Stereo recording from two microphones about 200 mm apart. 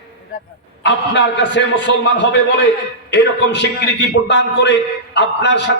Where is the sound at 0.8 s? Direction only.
60° left (ahead or behind).